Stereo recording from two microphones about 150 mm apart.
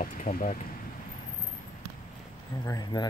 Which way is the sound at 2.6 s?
25° left (ahead or behind).